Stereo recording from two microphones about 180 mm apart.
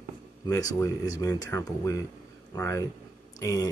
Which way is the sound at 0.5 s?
20° left (ahead or behind).